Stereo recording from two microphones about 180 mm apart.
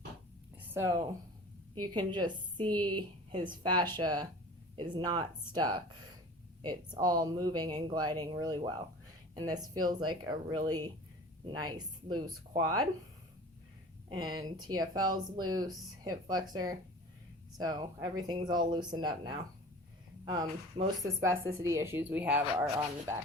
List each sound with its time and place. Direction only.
0.7 s speech: 15° right (ahead or behind)
14.1 s speech: 25° right (ahead or behind)